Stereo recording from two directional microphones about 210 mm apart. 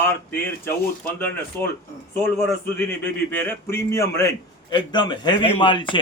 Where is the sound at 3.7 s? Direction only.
15° left (ahead or behind).